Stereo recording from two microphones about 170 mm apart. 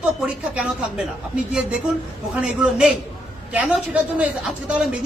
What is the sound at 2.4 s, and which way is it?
A man's voice, 5° right (ahead or behind).